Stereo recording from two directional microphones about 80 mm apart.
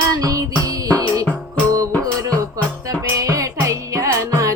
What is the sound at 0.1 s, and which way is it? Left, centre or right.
Music, right.